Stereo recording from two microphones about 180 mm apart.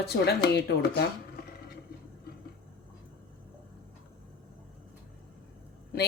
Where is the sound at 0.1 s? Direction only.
65° left (ahead or behind).